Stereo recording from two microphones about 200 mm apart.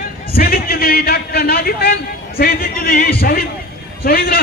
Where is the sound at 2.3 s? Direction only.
50° left (ahead or behind).